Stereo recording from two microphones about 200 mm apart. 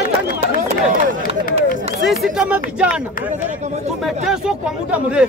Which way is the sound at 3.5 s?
35° right (ahead or behind).